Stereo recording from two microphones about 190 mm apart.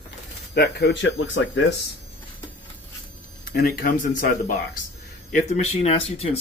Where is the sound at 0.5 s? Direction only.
60° left (ahead or behind); by 1.6 s 80° left.